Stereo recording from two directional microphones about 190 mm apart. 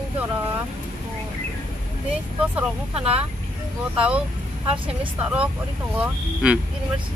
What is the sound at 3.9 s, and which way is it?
Speech, 5° right (ahead or behind).